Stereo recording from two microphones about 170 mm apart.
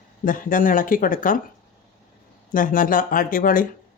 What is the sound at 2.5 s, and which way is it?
Speech, 55° left (ahead or behind).